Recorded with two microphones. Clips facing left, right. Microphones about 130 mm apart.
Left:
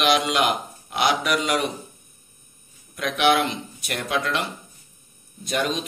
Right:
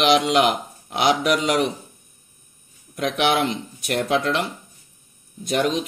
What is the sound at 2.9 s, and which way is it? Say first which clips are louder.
Speech: even; 25° right (ahead or behind).